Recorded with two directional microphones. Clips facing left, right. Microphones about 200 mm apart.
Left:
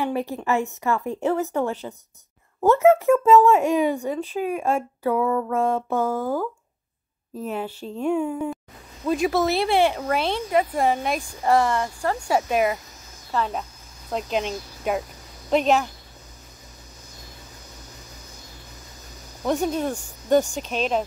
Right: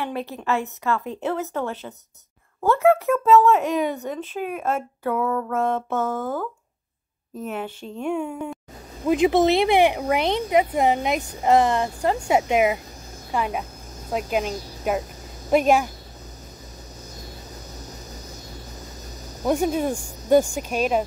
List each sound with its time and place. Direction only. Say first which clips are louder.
0.0 s speech: left 3 dB; 15° left (ahead or behind)
8.1 s speech: left 3 dB; 5° left (ahead or behind)
9.0 s speech: right 4 dB; 20° right (ahead or behind)
19.4 s speech: right 2 dB; 10° right (ahead or behind)